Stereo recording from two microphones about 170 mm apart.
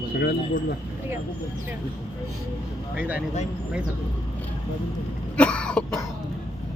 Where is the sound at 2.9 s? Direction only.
10° right (ahead or behind).